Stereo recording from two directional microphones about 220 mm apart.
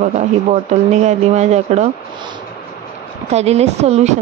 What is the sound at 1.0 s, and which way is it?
Speech, 30° right (ahead or behind).